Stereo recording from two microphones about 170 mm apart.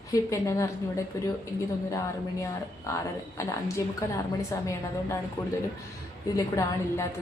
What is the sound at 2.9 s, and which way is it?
A woman's voice, 20° left (ahead or behind).